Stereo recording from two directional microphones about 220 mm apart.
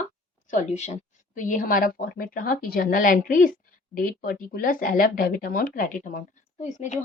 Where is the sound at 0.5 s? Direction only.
30° left (ahead or behind).